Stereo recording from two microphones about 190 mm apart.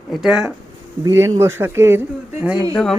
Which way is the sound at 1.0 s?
15° right (ahead or behind).